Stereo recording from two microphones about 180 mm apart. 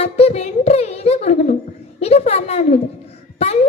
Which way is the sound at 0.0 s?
35° left (ahead or behind).